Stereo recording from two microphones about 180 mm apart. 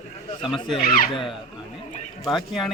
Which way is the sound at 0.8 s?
55° left (ahead or behind).